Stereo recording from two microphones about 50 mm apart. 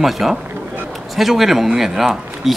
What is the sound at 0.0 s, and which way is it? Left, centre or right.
A woman's voice, centre.